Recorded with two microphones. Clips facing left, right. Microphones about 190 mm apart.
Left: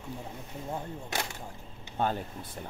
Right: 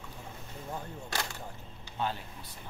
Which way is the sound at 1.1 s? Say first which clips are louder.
Left 2 dB; 20° left (ahead or behind).